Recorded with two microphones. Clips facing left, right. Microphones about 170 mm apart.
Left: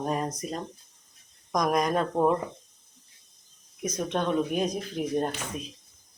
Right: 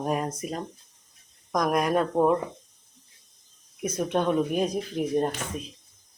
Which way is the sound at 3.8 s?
10° right (ahead or behind).